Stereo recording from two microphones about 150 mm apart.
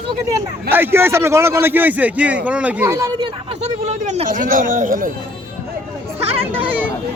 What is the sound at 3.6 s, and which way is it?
Speech, 50° right (ahead or behind).